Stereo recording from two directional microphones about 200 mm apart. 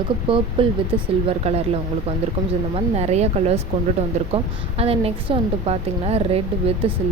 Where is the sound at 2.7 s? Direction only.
35° right (ahead or behind).